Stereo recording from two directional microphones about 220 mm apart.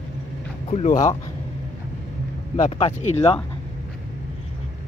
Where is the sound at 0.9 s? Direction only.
15° left (ahead or behind).